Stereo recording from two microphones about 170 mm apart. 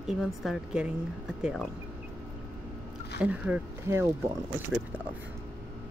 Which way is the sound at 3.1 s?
10° right (ahead or behind).